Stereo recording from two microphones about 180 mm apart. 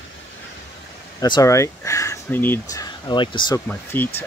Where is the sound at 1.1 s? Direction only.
20° left (ahead or behind).